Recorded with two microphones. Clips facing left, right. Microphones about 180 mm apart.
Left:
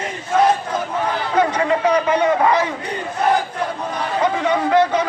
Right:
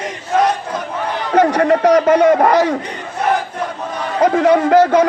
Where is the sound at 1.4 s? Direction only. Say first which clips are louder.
Right 6 dB; 45° right (ahead or behind).